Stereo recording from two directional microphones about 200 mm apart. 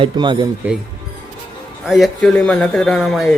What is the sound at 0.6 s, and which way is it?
Speech, 10° right (ahead or behind).